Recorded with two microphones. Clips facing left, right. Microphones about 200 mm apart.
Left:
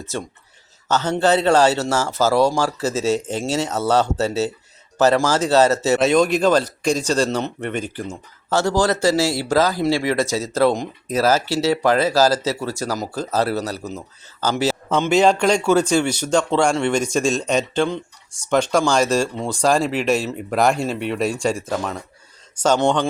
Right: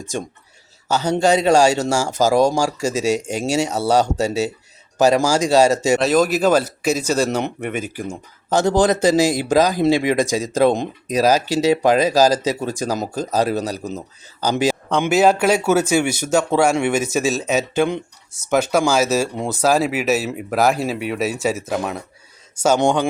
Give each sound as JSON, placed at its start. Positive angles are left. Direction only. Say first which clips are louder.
{"t": 0.0, "sound": "speech", "louder": "right 2 dB", "side_deg": -15}
{"t": 6.0, "sound": "speech", "louder": "even", "side_deg": 0}